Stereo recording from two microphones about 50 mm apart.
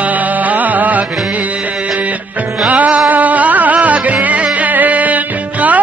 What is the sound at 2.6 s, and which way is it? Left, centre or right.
Music, right.